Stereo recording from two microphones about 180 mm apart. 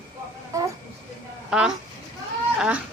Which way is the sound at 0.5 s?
20° right (ahead or behind).